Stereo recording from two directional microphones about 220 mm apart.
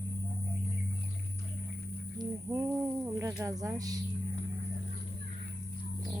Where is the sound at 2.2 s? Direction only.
15° right (ahead or behind).